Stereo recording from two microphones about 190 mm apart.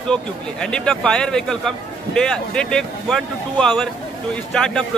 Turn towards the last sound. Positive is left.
turn(degrees=5)  # may be behind; listen again after turning